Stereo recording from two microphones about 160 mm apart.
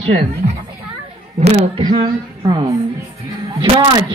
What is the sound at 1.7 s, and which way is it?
Speech, 30° right (ahead or behind).